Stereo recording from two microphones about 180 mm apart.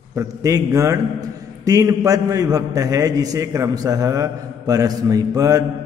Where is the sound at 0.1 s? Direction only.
15° right (ahead or behind).